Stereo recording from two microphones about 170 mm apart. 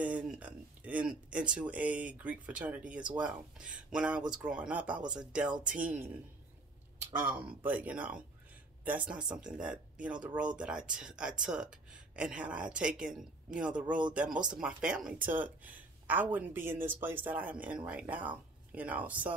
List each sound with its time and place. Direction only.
0.0 s speech: 5° right (ahead or behind)
7.2 s speech: 10° right (ahead or behind)